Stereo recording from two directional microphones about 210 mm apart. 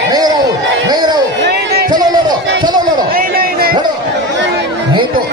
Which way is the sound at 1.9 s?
20° right (ahead or behind).